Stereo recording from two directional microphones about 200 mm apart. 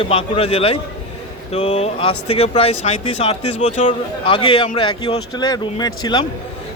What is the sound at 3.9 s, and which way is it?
Speech, 25° left (ahead or behind).